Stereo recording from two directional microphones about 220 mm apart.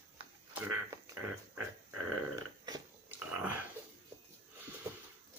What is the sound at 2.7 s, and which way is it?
Dog, 10° right (ahead or behind).